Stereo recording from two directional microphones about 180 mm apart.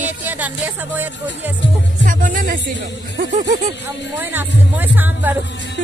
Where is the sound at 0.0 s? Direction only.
10° right (ahead or behind).